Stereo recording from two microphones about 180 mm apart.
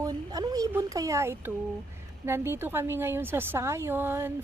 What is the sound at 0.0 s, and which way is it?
A woman's voice, 20° right (ahead or behind).